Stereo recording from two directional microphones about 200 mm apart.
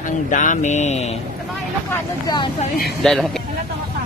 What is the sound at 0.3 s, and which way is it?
Speech, 40° left (ahead or behind).